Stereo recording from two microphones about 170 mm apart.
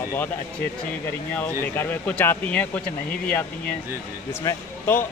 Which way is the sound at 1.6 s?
10° left (ahead or behind).